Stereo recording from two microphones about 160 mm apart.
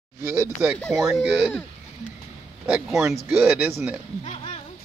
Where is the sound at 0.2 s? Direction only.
15° right (ahead or behind).